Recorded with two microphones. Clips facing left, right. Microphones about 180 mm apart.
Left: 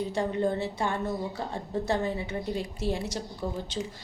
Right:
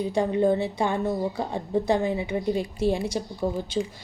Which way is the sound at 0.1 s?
15° right (ahead or behind).